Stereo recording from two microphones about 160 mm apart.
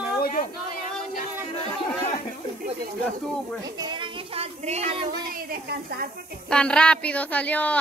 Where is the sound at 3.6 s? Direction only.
25° right (ahead or behind); by 4.8 s 40° right (ahead or behind).